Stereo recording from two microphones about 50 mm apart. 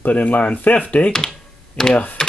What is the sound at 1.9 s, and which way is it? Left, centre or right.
Speech, left.